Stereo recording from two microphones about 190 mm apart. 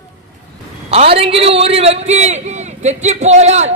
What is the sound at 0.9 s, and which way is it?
A man's voice, 30° right (ahead or behind).